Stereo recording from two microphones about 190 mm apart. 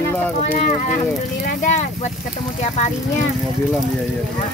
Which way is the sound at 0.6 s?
40° left (ahead or behind).